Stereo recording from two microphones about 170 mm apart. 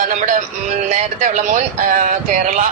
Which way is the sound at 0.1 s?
45° right (ahead or behind).